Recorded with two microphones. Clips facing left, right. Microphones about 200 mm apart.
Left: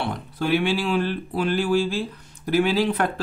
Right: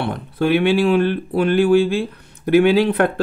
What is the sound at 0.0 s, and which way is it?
Speech, 60° right (ahead or behind).